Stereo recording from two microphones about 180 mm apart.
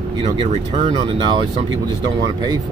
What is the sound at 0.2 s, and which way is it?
Speech, 35° right (ahead or behind).